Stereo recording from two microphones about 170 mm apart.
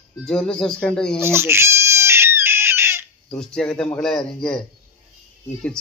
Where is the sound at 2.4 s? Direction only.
15° right (ahead or behind).